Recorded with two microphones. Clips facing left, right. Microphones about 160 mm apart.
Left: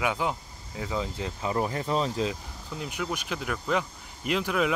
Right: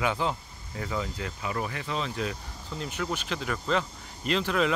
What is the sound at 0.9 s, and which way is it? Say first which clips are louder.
Speech: left 2 dB; 20° left (ahead or behind).